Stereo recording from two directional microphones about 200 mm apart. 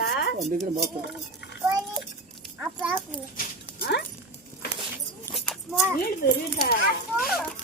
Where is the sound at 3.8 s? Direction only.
55° left (ahead or behind).